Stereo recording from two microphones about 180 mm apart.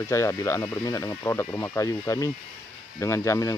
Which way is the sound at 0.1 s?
15° left (ahead or behind).